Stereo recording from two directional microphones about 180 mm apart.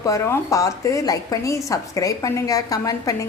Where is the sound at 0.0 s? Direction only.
15° left (ahead or behind).